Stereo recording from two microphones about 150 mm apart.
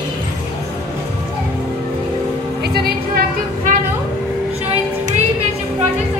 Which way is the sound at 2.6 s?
90° right.